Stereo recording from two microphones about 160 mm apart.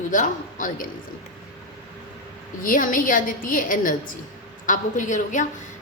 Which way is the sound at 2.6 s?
55° left (ahead or behind).